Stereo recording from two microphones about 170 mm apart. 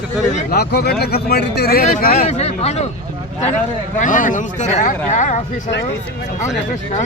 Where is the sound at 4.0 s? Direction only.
50° left (ahead or behind).